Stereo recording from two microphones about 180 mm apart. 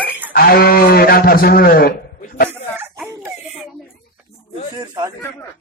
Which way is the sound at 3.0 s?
20° right (ahead or behind).